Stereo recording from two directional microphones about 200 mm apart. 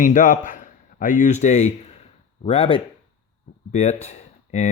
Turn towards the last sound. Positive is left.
turn(degrees=35)  # may be behind; listen again after turning